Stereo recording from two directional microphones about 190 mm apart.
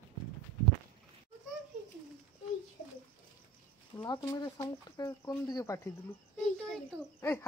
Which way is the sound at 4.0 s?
20° left (ahead or behind).